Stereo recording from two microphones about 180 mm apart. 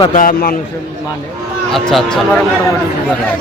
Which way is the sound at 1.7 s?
Centre (ahead or behind).